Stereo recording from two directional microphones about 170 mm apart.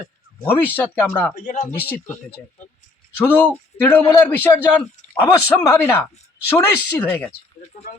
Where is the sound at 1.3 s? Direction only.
55° left (ahead or behind).